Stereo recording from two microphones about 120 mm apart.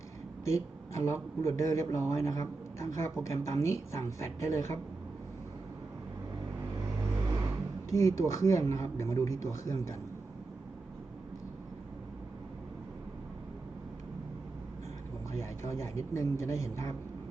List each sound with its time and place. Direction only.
0.4 s speech: 25° left (ahead or behind)
7.9 s speech: 25° left (ahead or behind)
15.4 s speech: 25° left (ahead or behind)